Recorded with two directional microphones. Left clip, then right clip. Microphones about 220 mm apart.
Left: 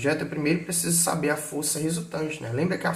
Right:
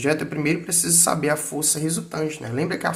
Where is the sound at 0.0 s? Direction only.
50° right (ahead or behind).